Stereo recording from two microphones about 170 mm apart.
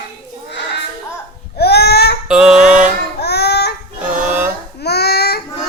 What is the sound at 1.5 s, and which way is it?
Crying, 70° left (ahead or behind).